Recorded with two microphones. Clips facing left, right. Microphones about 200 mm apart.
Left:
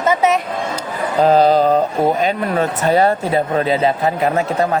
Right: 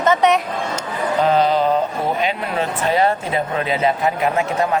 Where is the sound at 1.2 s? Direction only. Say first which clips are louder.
Left 5 dB; 35° left (ahead or behind).